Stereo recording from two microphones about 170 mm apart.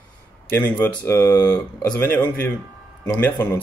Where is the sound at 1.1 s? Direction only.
15° left (ahead or behind).